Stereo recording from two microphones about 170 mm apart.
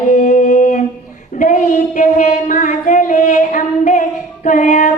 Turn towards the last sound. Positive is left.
turn(degrees=50)  # may be behind; listen again after turning